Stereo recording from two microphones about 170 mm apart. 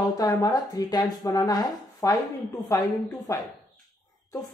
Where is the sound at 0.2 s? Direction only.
20° left (ahead or behind).